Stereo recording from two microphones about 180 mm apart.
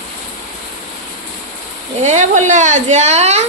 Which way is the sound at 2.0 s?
40° right (ahead or behind).